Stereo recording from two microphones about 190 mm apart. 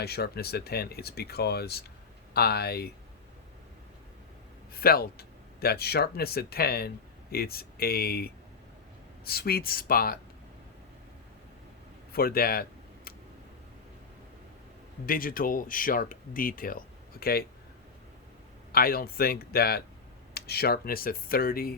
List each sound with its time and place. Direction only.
0.0 s speech: 55° left (ahead or behind)
4.7 s speech: 55° left (ahead or behind)
12.1 s speech: 50° left (ahead or behind)
15.0 s speech: 50° left (ahead or behind)
18.7 s speech: 50° left (ahead or behind)